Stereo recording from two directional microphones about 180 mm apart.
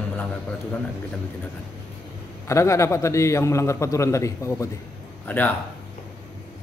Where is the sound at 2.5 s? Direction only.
15° left (ahead or behind).